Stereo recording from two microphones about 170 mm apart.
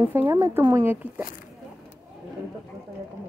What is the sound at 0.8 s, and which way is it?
Speech, 10° right (ahead or behind).